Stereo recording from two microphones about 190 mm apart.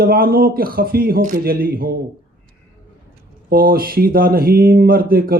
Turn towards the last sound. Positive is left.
turn(degrees=-50)  # may be behind; listen again after turning